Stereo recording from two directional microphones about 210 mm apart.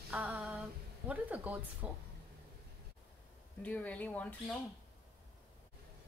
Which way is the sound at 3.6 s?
5° left (ahead or behind).